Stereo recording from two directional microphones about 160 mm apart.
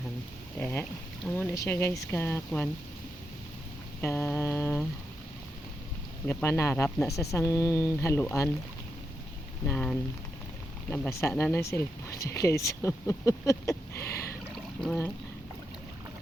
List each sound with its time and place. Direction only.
0.6 s speech: 10° left (ahead or behind)
4.0 s speech: 15° left (ahead or behind)
6.2 s speech: 15° left (ahead or behind)
9.6 s speech: 5° left (ahead or behind)
14.5 s a sound: 5° left (ahead or behind)